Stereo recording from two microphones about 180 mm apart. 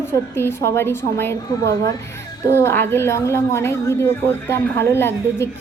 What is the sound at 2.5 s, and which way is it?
A woman's voice, 10° left (ahead or behind).